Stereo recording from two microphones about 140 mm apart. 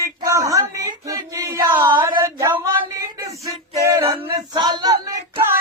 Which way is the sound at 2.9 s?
25° right (ahead or behind).